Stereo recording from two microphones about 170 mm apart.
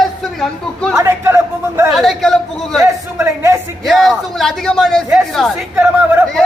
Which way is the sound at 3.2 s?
15° right (ahead or behind).